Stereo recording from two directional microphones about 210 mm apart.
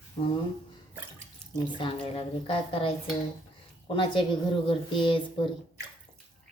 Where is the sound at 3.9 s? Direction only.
25° left (ahead or behind).